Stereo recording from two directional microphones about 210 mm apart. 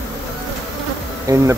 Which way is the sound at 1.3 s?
15° right (ahead or behind).